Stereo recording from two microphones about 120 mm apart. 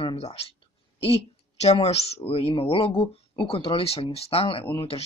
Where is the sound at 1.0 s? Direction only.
60° left (ahead or behind).